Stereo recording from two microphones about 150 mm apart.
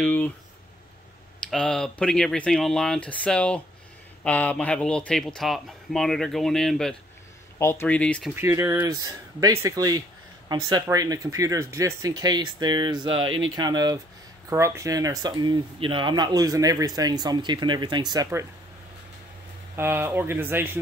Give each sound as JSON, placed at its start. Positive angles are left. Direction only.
{"t": 0.0, "sound": "speech", "side_deg": 10}
{"t": 1.5, "sound": "speech", "side_deg": 5}
{"t": 7.5, "sound": "speech", "side_deg": 15}
{"t": 8.4, "sound": "speech", "side_deg": -20}
{"t": 19.7, "sound": "speech", "side_deg": -15}